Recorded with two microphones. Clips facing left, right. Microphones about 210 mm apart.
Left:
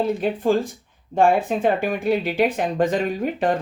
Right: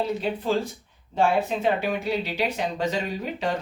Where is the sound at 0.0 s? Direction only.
50° left (ahead or behind).